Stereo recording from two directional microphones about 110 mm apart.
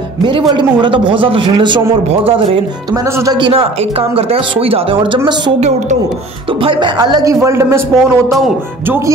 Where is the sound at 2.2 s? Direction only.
55° right (ahead or behind).